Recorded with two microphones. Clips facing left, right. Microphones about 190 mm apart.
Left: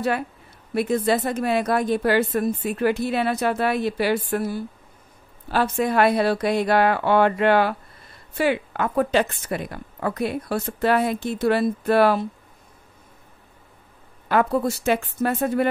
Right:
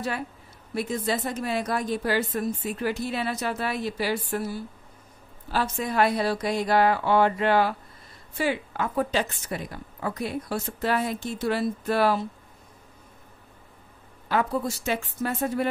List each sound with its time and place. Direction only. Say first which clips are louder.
0.7 s a woman's voice: left 7 dB; 60° left (ahead or behind)
14.3 s a woman's voice: left 5 dB; 60° left (ahead or behind)